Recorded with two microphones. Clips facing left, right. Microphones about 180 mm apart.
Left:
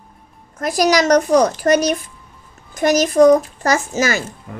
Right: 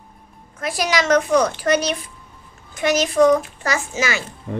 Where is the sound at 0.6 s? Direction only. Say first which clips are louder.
Left 6 dB; 40° left (ahead or behind).